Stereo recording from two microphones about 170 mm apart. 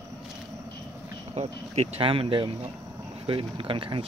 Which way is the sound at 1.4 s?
40° right (ahead or behind).